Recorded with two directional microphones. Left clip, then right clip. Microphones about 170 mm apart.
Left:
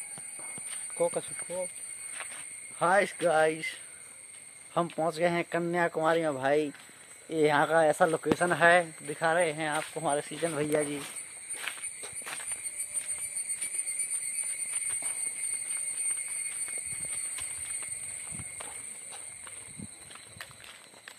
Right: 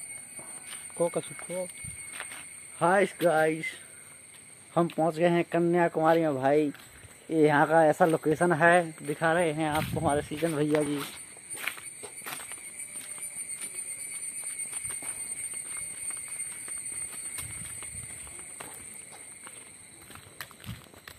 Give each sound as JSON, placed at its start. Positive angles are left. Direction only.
{"t": 0.9, "sound": "speech", "side_deg": 10}
{"t": 2.8, "sound": "speech", "side_deg": 0}
{"t": 4.9, "sound": "speech", "side_deg": 0}
{"t": 8.5, "sound": "speech", "side_deg": 5}
{"t": 9.1, "sound": "speech", "side_deg": -10}
{"t": 9.9, "sound": "speech", "side_deg": 0}
{"t": 11.5, "sound": "a sound", "side_deg": -60}
{"t": 20.1, "sound": "a sound", "side_deg": -60}